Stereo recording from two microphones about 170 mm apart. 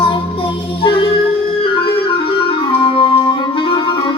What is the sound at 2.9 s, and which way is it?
Music, 30° left (ahead or behind).